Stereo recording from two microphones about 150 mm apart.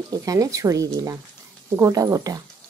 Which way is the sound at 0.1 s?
25° right (ahead or behind).